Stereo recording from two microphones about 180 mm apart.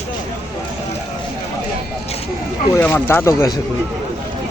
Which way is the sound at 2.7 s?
10° left (ahead or behind).